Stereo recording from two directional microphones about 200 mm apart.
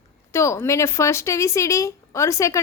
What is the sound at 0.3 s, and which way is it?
A woman's voice, 15° left (ahead or behind).